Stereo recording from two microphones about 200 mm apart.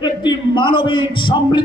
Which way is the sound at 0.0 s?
25° left (ahead or behind).